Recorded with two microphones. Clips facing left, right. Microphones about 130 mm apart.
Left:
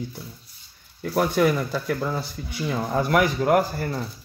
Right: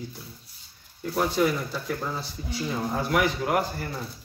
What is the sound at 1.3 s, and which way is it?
Speech, 70° left (ahead or behind).